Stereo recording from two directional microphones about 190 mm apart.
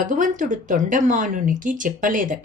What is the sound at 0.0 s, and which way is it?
Speech, 45° right (ahead or behind).